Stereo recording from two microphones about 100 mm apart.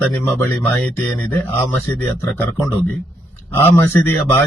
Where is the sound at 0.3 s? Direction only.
25° left (ahead or behind).